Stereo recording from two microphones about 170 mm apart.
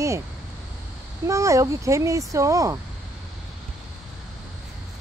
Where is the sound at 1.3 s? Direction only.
20° right (ahead or behind).